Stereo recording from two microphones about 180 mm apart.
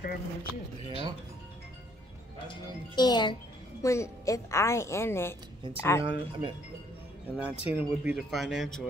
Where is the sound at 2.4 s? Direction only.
25° left (ahead or behind).